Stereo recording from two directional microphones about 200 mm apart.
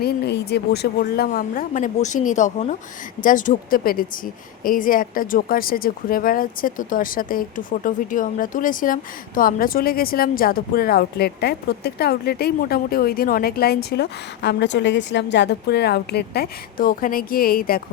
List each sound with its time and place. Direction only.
0.0 s speech: 55° left (ahead or behind)